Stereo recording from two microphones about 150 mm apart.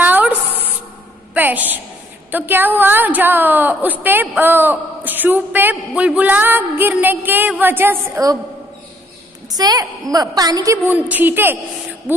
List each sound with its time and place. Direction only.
0.0 s a sound: 10° right (ahead or behind)
2.3 s a woman's voice: 10° right (ahead or behind)
9.5 s a woman's voice: 25° right (ahead or behind)